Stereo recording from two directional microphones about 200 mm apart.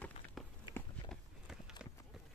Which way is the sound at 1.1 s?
5° right (ahead or behind).